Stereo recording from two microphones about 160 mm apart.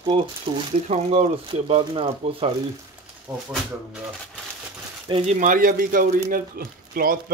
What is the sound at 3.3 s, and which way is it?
Speech, 20° right (ahead or behind).